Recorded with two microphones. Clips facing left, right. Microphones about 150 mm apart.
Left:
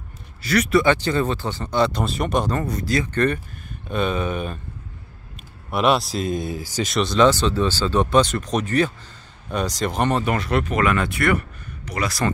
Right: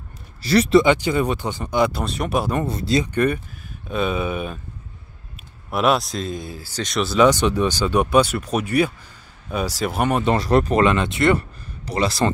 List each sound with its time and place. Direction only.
0.4 s speech: 30° right (ahead or behind)
0.8 s speech: 10° right (ahead or behind)
2.6 s speech: 25° right (ahead or behind)
3.1 s speech: 10° right (ahead or behind)
5.7 s speech: centre (ahead or behind)
6.2 s speech: 20° left (ahead or behind)
6.8 s speech: centre (ahead or behind)
7.2 s speech: 15° right (ahead or behind)
10.2 s speech: 35° right (ahead or behind)